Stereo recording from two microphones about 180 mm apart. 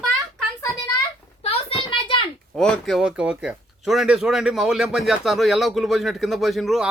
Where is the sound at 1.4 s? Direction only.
30° left (ahead or behind).